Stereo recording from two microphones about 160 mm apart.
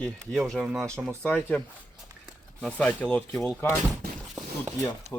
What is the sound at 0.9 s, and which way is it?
Speech, 15° right (ahead or behind).